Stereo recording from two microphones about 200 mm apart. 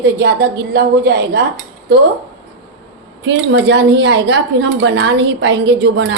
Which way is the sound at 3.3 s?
65° right (ahead or behind).